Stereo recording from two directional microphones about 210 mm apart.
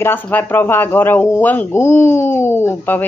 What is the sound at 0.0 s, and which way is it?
Speech, 10° left (ahead or behind).